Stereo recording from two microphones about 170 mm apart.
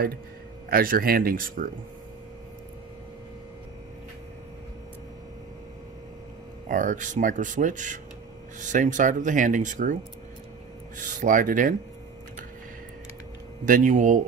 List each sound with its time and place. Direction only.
0.7 s speech: 60° right (ahead or behind)
6.7 s speech: 50° right (ahead or behind)
11.0 s speech: 50° right (ahead or behind)
13.7 s speech: 50° right (ahead or behind)